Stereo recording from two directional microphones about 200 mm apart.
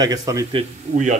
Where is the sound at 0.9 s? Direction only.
40° right (ahead or behind).